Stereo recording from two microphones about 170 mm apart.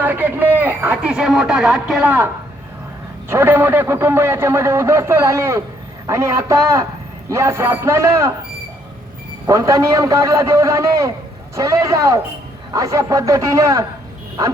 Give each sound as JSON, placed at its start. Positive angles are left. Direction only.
{"t": 0.0, "sound": "a man's voice", "side_deg": -10}
{"t": 9.5, "sound": "a man's voice", "side_deg": -20}